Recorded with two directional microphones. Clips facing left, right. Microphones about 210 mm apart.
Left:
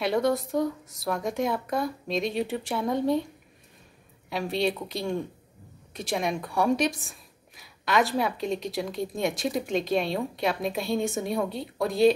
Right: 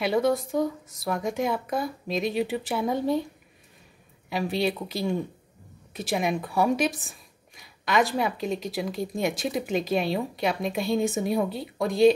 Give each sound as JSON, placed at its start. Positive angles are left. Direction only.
{"t": 0.0, "sound": "speech", "side_deg": 0}
{"t": 4.3, "sound": "speech", "side_deg": 0}